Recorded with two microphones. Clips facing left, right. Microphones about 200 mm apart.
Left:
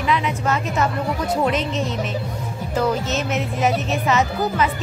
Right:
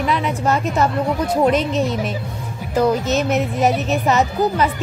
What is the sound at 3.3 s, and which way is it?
Speech, 40° right (ahead or behind).